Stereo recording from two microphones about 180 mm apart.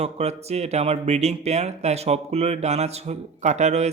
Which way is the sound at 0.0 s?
35° right (ahead or behind).